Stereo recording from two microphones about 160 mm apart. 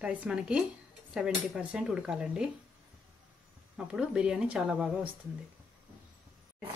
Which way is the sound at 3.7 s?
5° right (ahead or behind).